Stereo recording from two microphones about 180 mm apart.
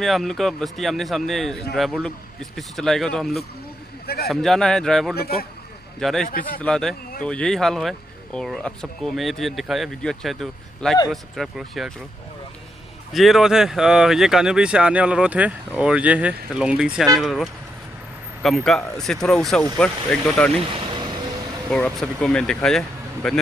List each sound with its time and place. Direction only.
0.0 s speech: centre (ahead or behind)
4.0 s a sound: 60° left (ahead or behind)
4.3 s speech: centre (ahead or behind)
5.1 s a man's voice: 60° left (ahead or behind)
5.9 s speech: centre (ahead or behind)
6.2 s speech: 55° left (ahead or behind)
6.6 s speech: 5° left (ahead or behind)
13.1 s speech: centre (ahead or behind)
21.6 s speech: 5° left (ahead or behind)